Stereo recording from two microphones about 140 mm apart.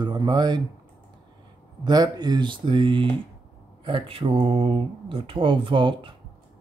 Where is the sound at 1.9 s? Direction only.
30° right (ahead or behind).